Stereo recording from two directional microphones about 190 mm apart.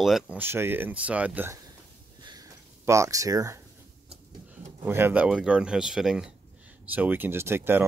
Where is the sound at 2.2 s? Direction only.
20° right (ahead or behind).